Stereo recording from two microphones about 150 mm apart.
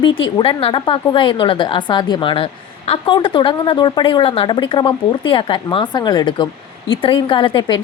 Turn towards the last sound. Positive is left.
turn(degrees=35)  # may be behind; listen again after turning